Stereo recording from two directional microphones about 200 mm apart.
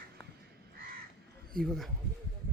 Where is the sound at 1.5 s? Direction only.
Centre (ahead or behind).